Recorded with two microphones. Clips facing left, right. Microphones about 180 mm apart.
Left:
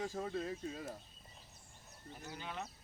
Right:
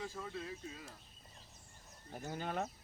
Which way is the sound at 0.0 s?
45° left (ahead or behind).